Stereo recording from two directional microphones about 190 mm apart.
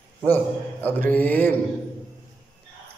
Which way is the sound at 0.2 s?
10° left (ahead or behind).